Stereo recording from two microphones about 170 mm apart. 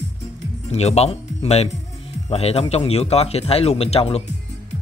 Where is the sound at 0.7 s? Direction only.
40° left (ahead or behind).